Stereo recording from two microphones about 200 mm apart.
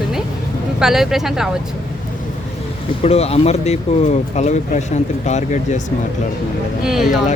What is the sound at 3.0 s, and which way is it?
Speech, 30° left (ahead or behind).